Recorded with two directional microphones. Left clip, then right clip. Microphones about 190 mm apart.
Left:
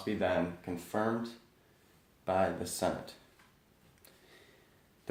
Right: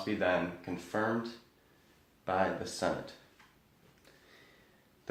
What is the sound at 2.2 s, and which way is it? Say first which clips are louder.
Speech: left 1 dB; 45° left (ahead or behind).